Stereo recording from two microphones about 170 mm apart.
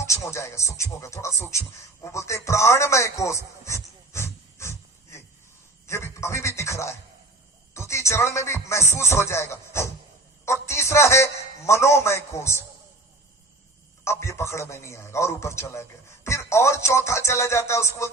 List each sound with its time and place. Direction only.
0.0 s speech: 15° left (ahead or behind)
5.8 s a sound: 15° left (ahead or behind)
7.7 s a man's voice: 15° left (ahead or behind)
14.0 s a man's voice: 15° left (ahead or behind)